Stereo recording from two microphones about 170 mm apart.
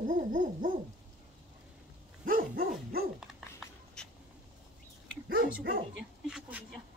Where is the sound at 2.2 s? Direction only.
55° right (ahead or behind).